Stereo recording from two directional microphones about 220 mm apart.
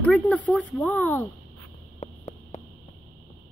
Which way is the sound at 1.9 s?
30° left (ahead or behind).